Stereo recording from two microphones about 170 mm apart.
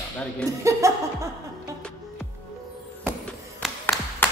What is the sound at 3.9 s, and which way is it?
Clapping, centre (ahead or behind).